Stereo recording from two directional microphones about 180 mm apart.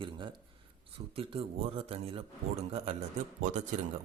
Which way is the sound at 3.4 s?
40° right (ahead or behind).